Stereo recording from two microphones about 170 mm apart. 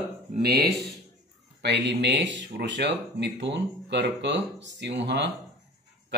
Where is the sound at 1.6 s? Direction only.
85° right.